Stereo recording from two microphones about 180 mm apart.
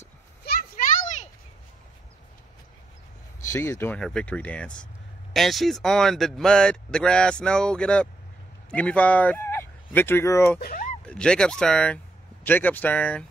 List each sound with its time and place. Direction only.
0.5 s a sound: 60° left (ahead or behind)
3.4 s speech: 15° left (ahead or behind)
10.6 s speech: 50° left (ahead or behind)
11.1 s speech: 5° left (ahead or behind)